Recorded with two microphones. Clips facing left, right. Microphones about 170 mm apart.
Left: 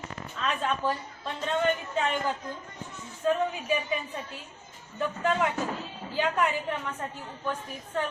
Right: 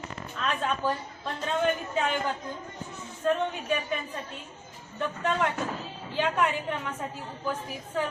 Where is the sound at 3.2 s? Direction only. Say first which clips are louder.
Even; 5° left (ahead or behind).